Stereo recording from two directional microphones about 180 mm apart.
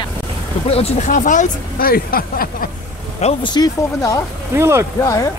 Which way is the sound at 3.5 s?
20° left (ahead or behind).